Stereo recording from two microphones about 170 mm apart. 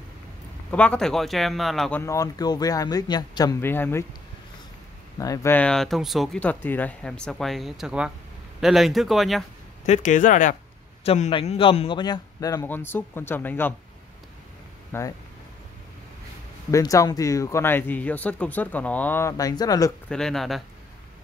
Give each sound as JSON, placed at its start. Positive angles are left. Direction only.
{"t": 0.7, "sound": "speech", "side_deg": 5}
{"t": 3.6, "sound": "speech", "side_deg": 10}
{"t": 5.2, "sound": "speech", "side_deg": 20}
{"t": 9.8, "sound": "a man's voice", "side_deg": 45}
{"t": 14.9, "sound": "speech", "side_deg": 15}
{"t": 16.7, "sound": "speech", "side_deg": 20}
{"t": 20.1, "sound": "speech", "side_deg": 5}